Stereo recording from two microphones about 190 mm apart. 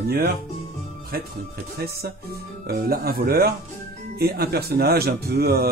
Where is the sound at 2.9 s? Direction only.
50° right (ahead or behind).